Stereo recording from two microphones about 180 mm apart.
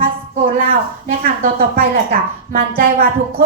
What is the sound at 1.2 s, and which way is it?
Speech, 55° right (ahead or behind).